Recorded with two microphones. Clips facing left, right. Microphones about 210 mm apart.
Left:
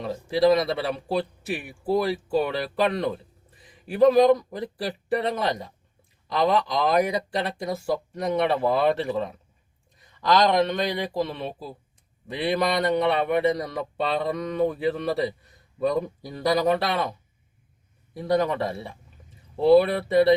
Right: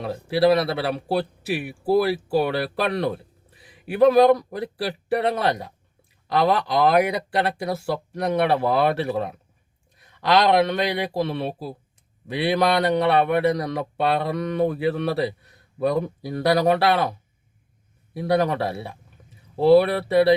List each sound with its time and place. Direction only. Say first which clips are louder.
0.4 s speech: right 1 dB; 65° right (ahead or behind)
2.3 s speech: right 2 dB; 70° right (ahead or behind)
9.9 s a sound: right 2 dB; 70° right (ahead or behind)
10.8 s speech: right 2 dB; 70° right (ahead or behind)